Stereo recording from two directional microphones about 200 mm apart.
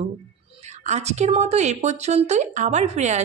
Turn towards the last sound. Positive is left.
turn(degrees=-35)  # may be behind; listen again after turning